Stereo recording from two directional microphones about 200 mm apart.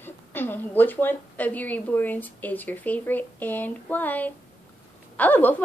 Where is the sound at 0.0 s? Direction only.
10° left (ahead or behind).